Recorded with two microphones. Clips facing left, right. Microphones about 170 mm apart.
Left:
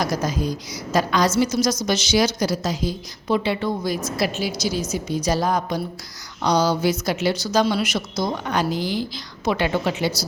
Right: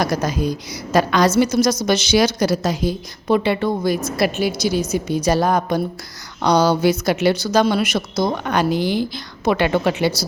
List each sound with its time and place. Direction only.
0.0 s a woman's voice: 65° right (ahead or behind)